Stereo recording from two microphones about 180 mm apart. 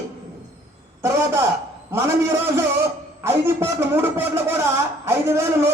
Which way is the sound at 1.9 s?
15° right (ahead or behind).